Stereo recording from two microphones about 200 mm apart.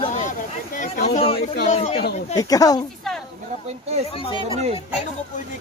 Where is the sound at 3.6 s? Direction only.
30° right (ahead or behind).